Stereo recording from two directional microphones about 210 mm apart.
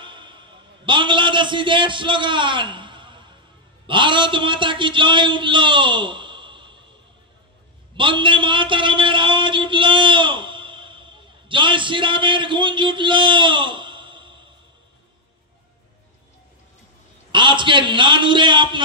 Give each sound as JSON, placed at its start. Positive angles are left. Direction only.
{"t": 0.0, "sound": "a sound", "side_deg": -20}
{"t": 0.8, "sound": "a man's voice", "side_deg": -20}
{"t": 7.9, "sound": "a man's voice", "side_deg": -25}
{"t": 17.3, "sound": "a man's voice", "side_deg": -25}